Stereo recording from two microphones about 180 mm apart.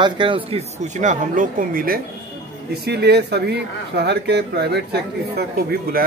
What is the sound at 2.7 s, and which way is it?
Speech, 65° right (ahead or behind).